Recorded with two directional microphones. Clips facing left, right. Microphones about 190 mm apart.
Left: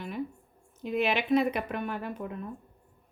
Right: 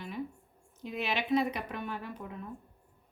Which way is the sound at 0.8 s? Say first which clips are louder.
Left 6 dB; 55° left (ahead or behind).